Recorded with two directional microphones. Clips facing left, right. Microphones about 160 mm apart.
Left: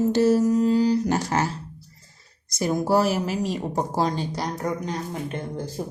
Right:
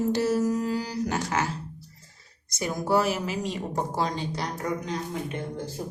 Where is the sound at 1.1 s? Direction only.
35° left (ahead or behind).